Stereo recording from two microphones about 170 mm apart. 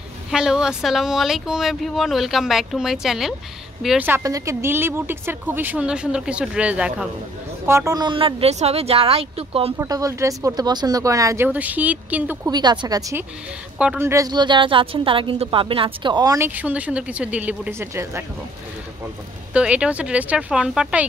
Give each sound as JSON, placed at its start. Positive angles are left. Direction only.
{"t": 0.3, "sound": "speech", "side_deg": -5}
{"t": 4.1, "sound": "a woman's voice", "side_deg": -20}
{"t": 7.6, "sound": "speech", "side_deg": -15}
{"t": 9.8, "sound": "a woman's voice", "side_deg": -20}
{"t": 12.4, "sound": "a woman's voice", "side_deg": -25}
{"t": 13.7, "sound": "a woman's voice", "side_deg": -10}
{"t": 19.5, "sound": "a woman's voice", "side_deg": -5}